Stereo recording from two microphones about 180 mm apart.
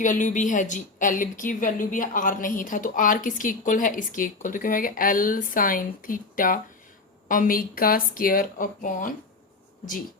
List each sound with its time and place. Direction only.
0.0 s a woman's voice: 45° left (ahead or behind)